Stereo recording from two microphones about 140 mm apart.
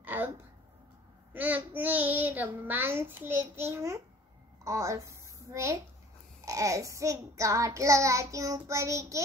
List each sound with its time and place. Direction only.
0.0 s a sound: 15° right (ahead or behind)
1.3 s child singing: 15° right (ahead or behind)
4.6 s a woman's voice: 20° right (ahead or behind)
6.4 s child singing: 25° right (ahead or behind)